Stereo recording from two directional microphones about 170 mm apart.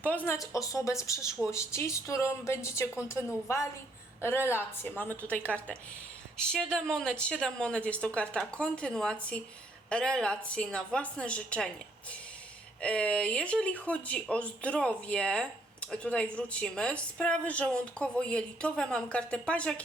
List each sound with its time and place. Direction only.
0.0 s speech: 10° left (ahead or behind)
0.3 s speech: 20° left (ahead or behind)
4.2 s a woman's voice: 15° left (ahead or behind)
12.8 s speech: 5° left (ahead or behind)